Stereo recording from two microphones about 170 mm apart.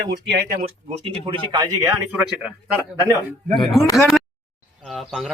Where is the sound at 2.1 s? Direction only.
10° right (ahead or behind).